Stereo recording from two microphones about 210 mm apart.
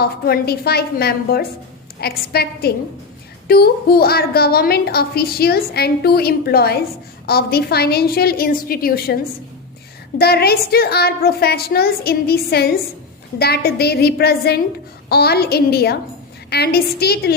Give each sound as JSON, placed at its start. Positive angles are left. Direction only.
{"t": 0.0, "sound": "a woman's voice", "side_deg": 50}
{"t": 10.2, "sound": "a woman's voice", "side_deg": 50}